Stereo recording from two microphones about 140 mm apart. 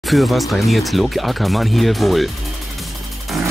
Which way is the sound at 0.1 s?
Centre (ahead or behind).